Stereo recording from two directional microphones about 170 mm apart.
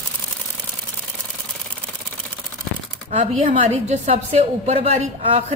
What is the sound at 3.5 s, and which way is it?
A woman's voice, 40° right (ahead or behind).